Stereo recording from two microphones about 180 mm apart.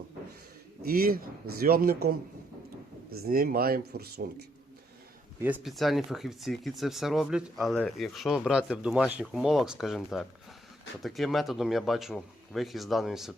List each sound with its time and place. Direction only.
0.8 s speech: 55° right (ahead or behind)
3.2 s speech: 55° right (ahead or behind)
5.4 s speech: 10° right (ahead or behind)
5.6 s speech: centre (ahead or behind)